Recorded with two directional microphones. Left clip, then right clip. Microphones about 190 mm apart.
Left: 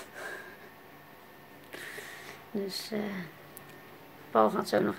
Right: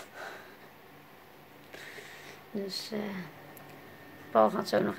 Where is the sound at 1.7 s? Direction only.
25° left (ahead or behind).